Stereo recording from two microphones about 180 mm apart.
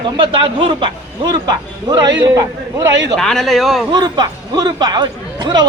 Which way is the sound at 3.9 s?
25° right (ahead or behind).